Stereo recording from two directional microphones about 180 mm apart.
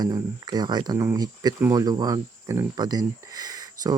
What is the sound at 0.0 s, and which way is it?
Speech, 20° right (ahead or behind).